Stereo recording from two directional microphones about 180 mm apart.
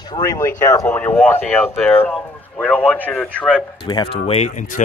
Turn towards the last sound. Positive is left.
turn(degrees=45)  # may be behind; listen again after turning